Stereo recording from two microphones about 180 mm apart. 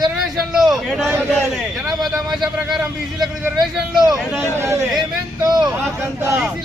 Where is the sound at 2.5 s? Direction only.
5° right (ahead or behind).